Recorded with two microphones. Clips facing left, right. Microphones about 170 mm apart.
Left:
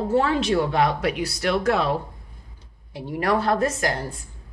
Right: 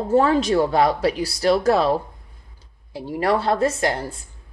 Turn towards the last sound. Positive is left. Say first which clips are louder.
# right 3 dB
turn(degrees=-25)  # may be behind; listen again after turning